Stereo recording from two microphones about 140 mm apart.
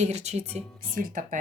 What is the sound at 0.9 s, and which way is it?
Speech, 75° right (ahead or behind).